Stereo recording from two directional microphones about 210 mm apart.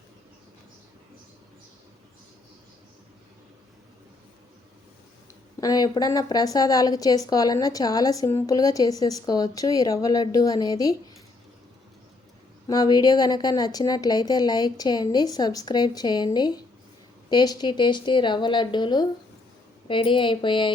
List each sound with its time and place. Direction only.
5.5 s speech: 20° left (ahead or behind)
12.6 s a woman's voice: 20° left (ahead or behind)